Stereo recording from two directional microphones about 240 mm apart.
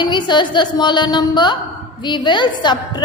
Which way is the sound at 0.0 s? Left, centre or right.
Centre.